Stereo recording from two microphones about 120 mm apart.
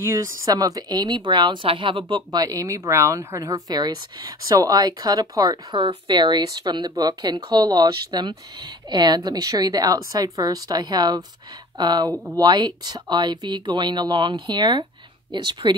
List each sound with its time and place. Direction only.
0.0 s speech: 25° right (ahead or behind); by 2.4 s 45° right (ahead or behind)
2.4 s speech: 25° right (ahead or behind)
5.8 s speech: 45° right (ahead or behind)